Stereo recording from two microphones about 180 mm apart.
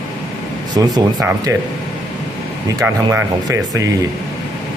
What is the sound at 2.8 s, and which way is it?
Speech, 20° right (ahead or behind).